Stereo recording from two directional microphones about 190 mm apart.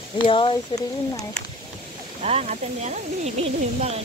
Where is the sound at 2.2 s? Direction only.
35° right (ahead or behind).